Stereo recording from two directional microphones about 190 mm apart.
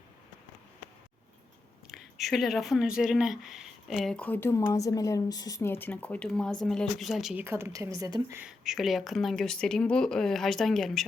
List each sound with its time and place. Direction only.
1.9 s speech: centre (ahead or behind)
7.4 s a woman's voice: 15° right (ahead or behind)
8.4 s speech: centre (ahead or behind)